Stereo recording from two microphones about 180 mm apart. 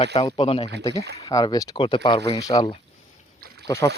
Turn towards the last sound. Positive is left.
turn(degrees=20)  # may be behind; listen again after turning